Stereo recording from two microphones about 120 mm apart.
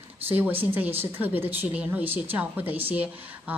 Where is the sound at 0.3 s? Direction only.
15° right (ahead or behind).